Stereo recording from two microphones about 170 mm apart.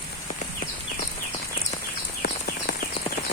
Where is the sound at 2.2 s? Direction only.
65° left (ahead or behind).